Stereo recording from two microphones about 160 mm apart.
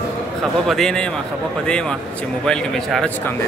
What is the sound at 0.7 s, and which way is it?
A man's voice, centre (ahead or behind).